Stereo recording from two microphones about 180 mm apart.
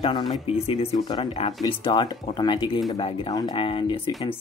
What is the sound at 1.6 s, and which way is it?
Speech, 25° left (ahead or behind).